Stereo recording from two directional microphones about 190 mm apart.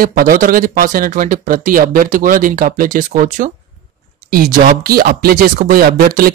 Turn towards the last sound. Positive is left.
turn(degrees=-50)  # may be behind; listen again after turning